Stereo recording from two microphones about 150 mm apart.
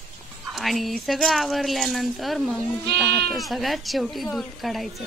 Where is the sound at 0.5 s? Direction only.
Centre (ahead or behind).